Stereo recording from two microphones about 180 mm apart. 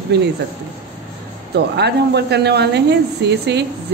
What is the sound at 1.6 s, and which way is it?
Speech, 65° right (ahead or behind).